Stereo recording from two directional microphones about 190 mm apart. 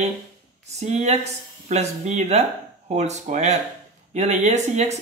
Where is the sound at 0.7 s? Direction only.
35° right (ahead or behind).